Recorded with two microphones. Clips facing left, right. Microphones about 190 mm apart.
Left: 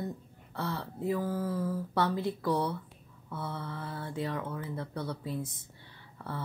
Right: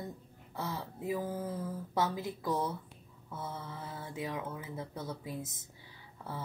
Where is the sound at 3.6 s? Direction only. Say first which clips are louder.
Left 4 dB; 10° right (ahead or behind).